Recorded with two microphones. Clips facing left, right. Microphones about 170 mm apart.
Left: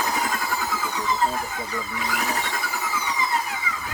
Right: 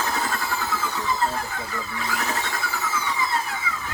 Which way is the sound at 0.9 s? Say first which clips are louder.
Left 2 dB; 15° left (ahead or behind).